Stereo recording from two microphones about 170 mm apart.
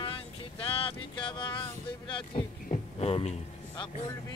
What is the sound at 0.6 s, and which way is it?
Speech, 35° left (ahead or behind).